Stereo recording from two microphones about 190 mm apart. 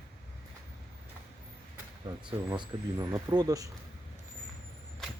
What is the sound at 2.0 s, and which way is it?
Speech, 20° right (ahead or behind).